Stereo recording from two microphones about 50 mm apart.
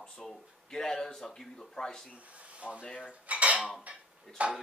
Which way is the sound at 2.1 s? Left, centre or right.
Right.